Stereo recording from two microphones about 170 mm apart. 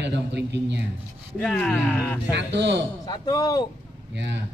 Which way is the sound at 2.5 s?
90° right.